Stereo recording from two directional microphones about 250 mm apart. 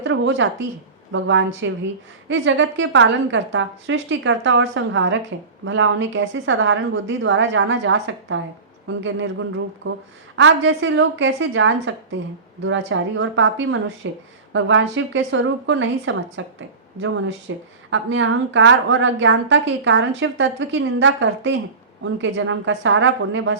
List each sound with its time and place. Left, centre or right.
0.0 s a woman's voice: right